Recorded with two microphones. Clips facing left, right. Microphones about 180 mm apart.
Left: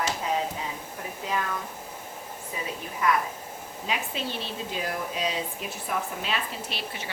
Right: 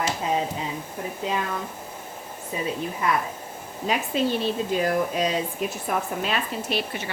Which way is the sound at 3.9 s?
45° right (ahead or behind).